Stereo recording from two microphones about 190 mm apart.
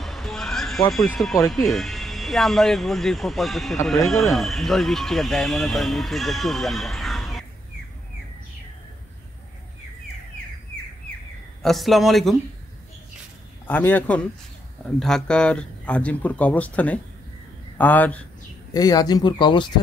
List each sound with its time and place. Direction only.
0.0 s a sound: centre (ahead or behind)
0.9 s speech: centre (ahead or behind)
11.6 s speech: centre (ahead or behind)
13.7 s speech: 10° left (ahead or behind)
18.7 s speech: 20° left (ahead or behind)